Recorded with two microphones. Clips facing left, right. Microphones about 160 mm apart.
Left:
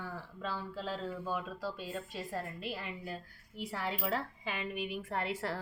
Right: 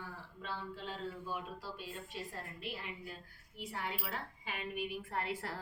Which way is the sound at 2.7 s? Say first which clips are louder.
Left 5 dB; 90° left.